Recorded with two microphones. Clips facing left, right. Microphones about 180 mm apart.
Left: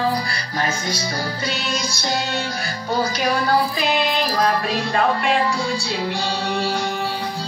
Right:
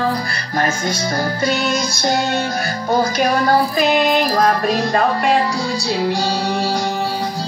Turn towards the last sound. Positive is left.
turn(degrees=-40)  # may be behind; listen again after turning